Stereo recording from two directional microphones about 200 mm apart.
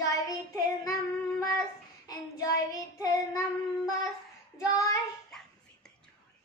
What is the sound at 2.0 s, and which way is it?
Child singing, 20° left (ahead or behind).